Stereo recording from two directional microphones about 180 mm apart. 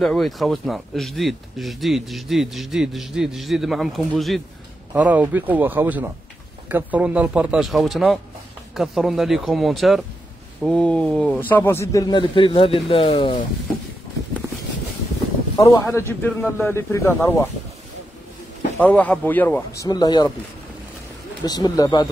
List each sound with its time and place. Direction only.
0.0 s a man's voice: centre (ahead or behind); by 13.5 s 30° left (ahead or behind)
15.5 s a man's voice: 20° left (ahead or behind)
18.8 s a man's voice: 10° left (ahead or behind)
19.8 s a man's voice: 20° left (ahead or behind)
21.5 s a man's voice: 20° left (ahead or behind)